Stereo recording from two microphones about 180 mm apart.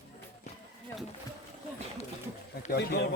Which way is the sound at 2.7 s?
60° left (ahead or behind).